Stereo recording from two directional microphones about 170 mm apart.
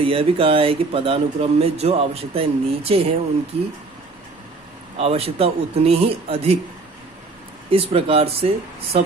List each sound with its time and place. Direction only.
0.0 s speech: 35° right (ahead or behind)
4.9 s speech: 35° right (ahead or behind)
7.7 s speech: 35° right (ahead or behind)